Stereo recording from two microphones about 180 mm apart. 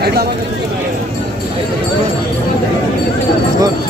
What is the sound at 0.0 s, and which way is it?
Speech, 60° right (ahead or behind).